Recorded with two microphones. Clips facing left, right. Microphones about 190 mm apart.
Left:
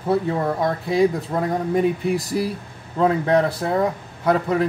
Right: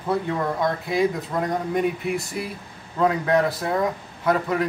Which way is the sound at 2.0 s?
35° left (ahead or behind).